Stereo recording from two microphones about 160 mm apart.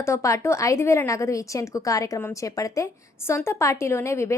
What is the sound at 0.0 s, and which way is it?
A woman's voice, 20° left (ahead or behind).